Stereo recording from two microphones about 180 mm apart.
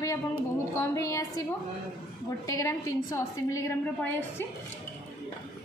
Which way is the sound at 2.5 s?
20° left (ahead or behind).